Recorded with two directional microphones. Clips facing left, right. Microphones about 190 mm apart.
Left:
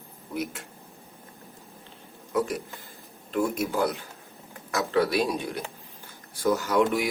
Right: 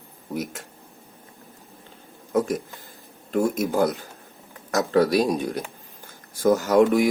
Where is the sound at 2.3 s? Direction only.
45° right (ahead or behind).